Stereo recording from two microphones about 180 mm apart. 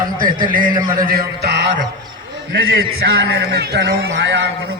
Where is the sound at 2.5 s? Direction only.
80° right.